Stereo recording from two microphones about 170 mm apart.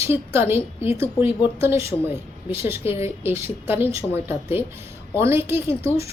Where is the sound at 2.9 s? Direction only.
15° right (ahead or behind).